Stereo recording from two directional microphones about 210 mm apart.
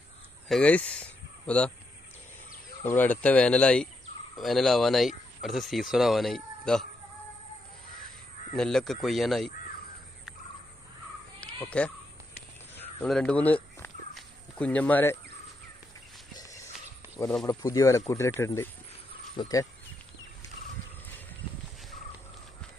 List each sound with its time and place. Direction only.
0.5 s speech: 5° left (ahead or behind)
2.8 s speech: 10° left (ahead or behind)
8.5 s speech: centre (ahead or behind)
11.4 s a sound: 5° left (ahead or behind)
12.7 s walk: 5° left (ahead or behind)
16.3 s walk: 15° left (ahead or behind)
17.5 s speech: 15° left (ahead or behind)